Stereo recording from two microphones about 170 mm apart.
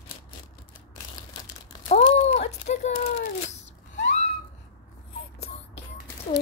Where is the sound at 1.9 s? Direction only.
40° left (ahead or behind).